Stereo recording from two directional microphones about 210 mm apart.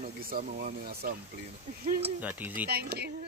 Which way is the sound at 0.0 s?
40° right (ahead or behind).